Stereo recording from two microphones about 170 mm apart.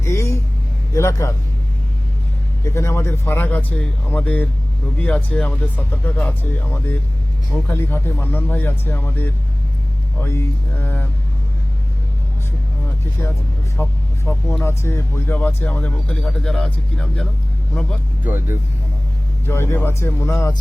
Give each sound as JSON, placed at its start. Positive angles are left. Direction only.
{"t": 0.0, "sound": "vehicle", "side_deg": 15}
{"t": 0.9, "sound": "speech", "side_deg": 15}
{"t": 2.6, "sound": "speech", "side_deg": 15}
{"t": 10.2, "sound": "speech", "side_deg": 10}
{"t": 13.8, "sound": "speech", "side_deg": 15}
{"t": 18.3, "sound": "speech", "side_deg": -15}
{"t": 19.5, "sound": "speech", "side_deg": 15}